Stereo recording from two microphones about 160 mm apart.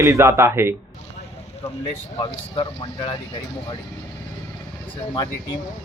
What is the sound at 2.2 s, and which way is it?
Speech, 35° left (ahead or behind).